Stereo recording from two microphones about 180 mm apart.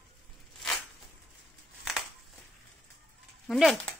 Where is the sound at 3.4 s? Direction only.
Centre (ahead or behind).